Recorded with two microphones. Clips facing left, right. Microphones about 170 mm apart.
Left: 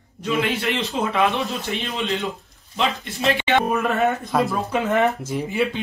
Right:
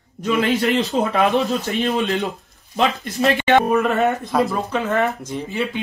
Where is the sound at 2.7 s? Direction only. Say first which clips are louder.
Right 4 dB; 45° right (ahead or behind).